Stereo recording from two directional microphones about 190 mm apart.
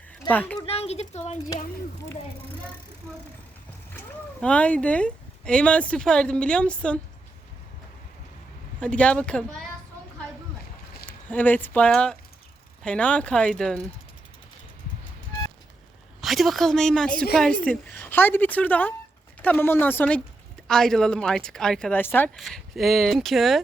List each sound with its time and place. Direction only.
0.3 s speech: 10° left (ahead or behind)
0.6 s a woman's voice: 30° left (ahead or behind)
3.9 s speech: 5° left (ahead or behind)
8.8 s speech: 5° left (ahead or behind)
11.3 s speech: 10° left (ahead or behind)
16.2 s speech: centre (ahead or behind)